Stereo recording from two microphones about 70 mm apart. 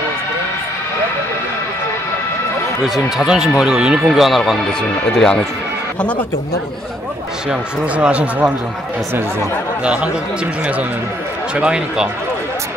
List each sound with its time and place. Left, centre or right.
2.8 s speech: centre
5.1 s speech: centre
7.4 s speech: centre
9.8 s speech: centre